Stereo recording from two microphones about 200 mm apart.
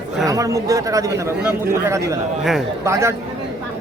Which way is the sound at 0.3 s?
15° right (ahead or behind).